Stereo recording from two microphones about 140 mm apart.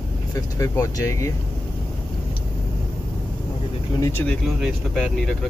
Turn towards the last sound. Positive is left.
turn(degrees=5)  # may be behind; listen again after turning